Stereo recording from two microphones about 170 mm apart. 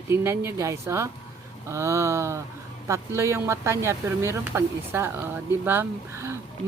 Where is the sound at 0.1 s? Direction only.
15° right (ahead or behind).